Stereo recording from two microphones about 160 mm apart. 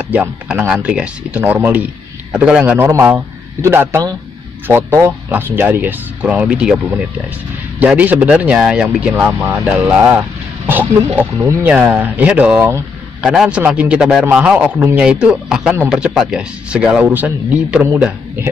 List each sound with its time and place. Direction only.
0.1 s speech: 10° right (ahead or behind)
7.8 s speech: 10° right (ahead or behind)
13.2 s a man's voice: 5° right (ahead or behind)